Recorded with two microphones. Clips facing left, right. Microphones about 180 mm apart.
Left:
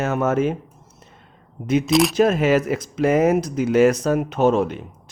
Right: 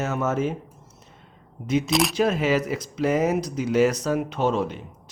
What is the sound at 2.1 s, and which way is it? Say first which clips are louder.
Speech: left 5 dB; 50° left (ahead or behind).